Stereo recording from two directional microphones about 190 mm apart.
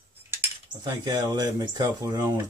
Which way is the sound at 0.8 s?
20° right (ahead or behind).